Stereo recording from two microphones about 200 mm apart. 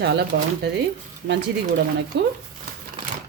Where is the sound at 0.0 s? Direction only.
55° right (ahead or behind).